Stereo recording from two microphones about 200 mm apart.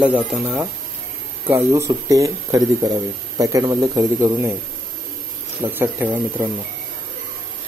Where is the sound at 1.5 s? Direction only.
15° right (ahead or behind).